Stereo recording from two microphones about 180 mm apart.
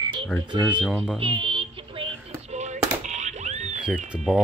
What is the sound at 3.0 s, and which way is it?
Music, 40° right (ahead or behind).